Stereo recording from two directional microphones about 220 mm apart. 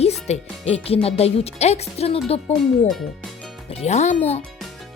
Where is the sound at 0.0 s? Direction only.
30° left (ahead or behind).